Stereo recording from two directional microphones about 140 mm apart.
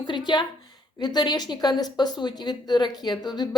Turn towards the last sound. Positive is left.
turn(degrees=30)  # may be behind; listen again after turning